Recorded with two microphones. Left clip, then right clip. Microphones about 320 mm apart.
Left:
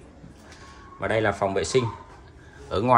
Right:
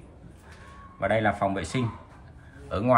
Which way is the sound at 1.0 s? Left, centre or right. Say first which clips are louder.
Left 1 dB; centre.